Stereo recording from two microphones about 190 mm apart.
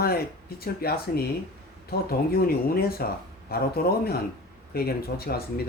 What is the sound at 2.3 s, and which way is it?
Speech, 55° left (ahead or behind).